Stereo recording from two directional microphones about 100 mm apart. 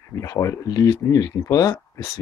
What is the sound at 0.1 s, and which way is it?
Speech, 30° left (ahead or behind).